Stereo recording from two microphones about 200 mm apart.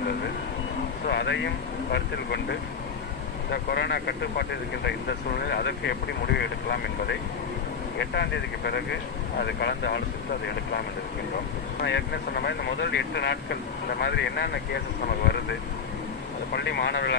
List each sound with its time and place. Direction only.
1.0 s speech: 60° left (ahead or behind)
11.8 s speech: 60° left (ahead or behind)
16.5 s speech: 60° left (ahead or behind)